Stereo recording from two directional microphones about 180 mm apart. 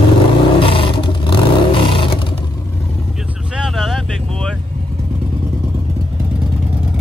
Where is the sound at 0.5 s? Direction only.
30° left (ahead or behind).